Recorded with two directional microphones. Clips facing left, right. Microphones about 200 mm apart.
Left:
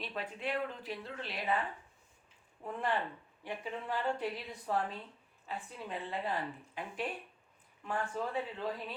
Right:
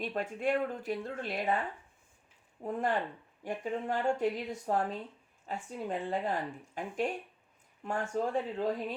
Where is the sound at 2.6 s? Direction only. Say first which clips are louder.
Right 3 dB; 40° right (ahead or behind).